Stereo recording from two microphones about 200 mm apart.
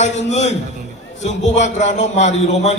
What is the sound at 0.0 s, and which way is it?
A man's voice, 35° left (ahead or behind).